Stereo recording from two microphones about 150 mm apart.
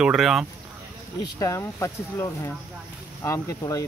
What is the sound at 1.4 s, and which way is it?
Speech, 20° left (ahead or behind).